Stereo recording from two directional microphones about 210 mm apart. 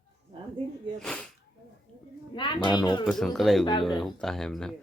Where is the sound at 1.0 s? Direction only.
5° left (ahead or behind).